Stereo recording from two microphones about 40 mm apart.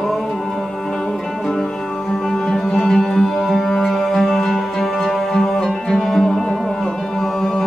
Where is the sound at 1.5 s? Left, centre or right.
Centre.